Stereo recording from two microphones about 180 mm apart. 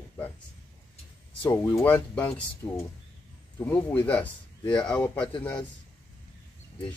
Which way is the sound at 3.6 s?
10° left (ahead or behind).